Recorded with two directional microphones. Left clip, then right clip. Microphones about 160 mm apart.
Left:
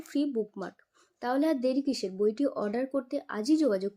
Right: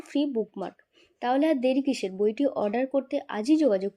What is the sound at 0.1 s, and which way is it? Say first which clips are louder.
Speech: right 3 dB; 10° right (ahead or behind).